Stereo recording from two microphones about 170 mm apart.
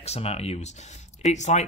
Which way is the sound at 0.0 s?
35° left (ahead or behind).